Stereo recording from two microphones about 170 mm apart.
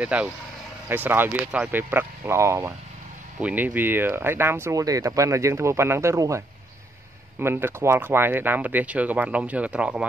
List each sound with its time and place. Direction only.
0.0 s speech: 10° right (ahead or behind)